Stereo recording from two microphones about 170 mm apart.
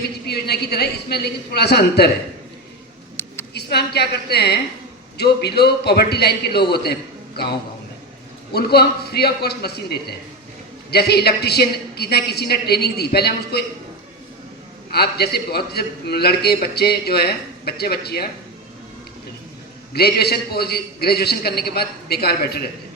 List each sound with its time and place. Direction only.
0.3 s a man's voice: 70° left (ahead or behind)
3.5 s a woman's voice: 75° left (ahead or behind)
8.5 s a man's voice: 70° left (ahead or behind)
14.9 s a man's voice: 70° left (ahead or behind)
19.9 s a man's voice: 70° left (ahead or behind)